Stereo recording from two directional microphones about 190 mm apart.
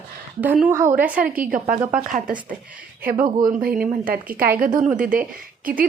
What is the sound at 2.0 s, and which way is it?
Speech, 45° right (ahead or behind).